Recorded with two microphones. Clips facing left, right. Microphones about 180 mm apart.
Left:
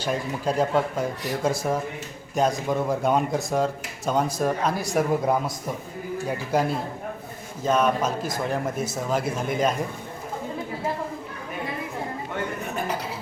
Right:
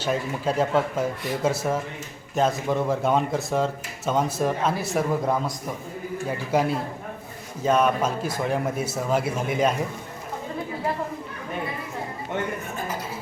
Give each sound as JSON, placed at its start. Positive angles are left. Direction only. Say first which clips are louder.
{"t": 0.0, "sound": "speech", "louder": "right 1 dB", "side_deg": -5}
{"t": 2.5, "sound": "speech", "louder": "even", "side_deg": 10}
{"t": 4.9, "sound": "speech", "louder": "left 4 dB", "side_deg": 15}
{"t": 6.2, "sound": "speech", "louder": "right 1 dB", "side_deg": -10}